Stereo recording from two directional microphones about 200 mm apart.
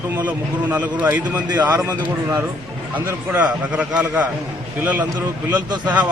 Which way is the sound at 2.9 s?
10° right (ahead or behind).